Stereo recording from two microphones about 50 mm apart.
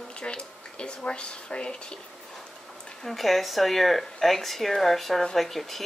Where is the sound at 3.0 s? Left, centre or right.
Centre.